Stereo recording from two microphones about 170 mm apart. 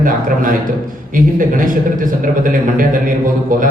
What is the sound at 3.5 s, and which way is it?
Speech, 55° right (ahead or behind).